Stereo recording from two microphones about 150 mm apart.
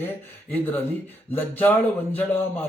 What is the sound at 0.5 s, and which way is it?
A man's voice, 15° left (ahead or behind).